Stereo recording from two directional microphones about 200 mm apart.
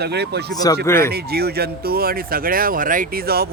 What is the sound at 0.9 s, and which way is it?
Speech, 10° left (ahead or behind).